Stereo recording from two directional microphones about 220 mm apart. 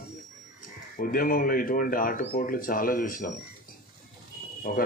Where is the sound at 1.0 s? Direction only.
40° left (ahead or behind).